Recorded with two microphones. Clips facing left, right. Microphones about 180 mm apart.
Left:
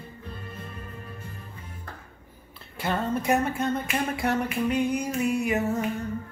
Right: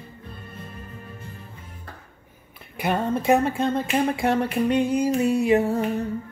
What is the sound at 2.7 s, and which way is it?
Music, 20° right (ahead or behind).